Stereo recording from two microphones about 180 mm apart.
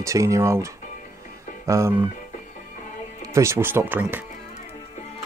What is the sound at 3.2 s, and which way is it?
Speech, 15° right (ahead or behind).